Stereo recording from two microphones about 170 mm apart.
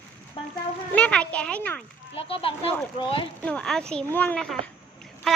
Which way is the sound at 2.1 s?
35° left (ahead or behind).